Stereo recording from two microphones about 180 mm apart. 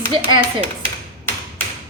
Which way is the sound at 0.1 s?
30° right (ahead or behind).